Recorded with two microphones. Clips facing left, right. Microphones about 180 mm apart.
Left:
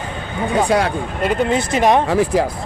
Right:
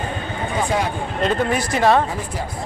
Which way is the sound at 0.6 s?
90° left.